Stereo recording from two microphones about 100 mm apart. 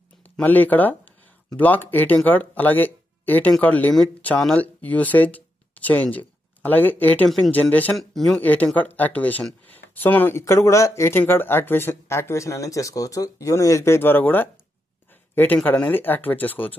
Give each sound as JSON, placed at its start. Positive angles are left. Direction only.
{"t": 0.4, "sound": "speech", "side_deg": 15}
{"t": 7.9, "sound": "speech", "side_deg": 5}
{"t": 8.4, "sound": "speech", "side_deg": 15}